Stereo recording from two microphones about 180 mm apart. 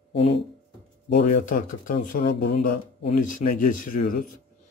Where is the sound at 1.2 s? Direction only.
45° left (ahead or behind).